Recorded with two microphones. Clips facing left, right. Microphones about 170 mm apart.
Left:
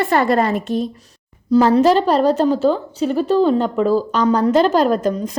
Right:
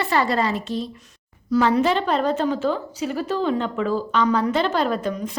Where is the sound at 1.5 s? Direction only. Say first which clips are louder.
Left 6 dB; 35° left (ahead or behind).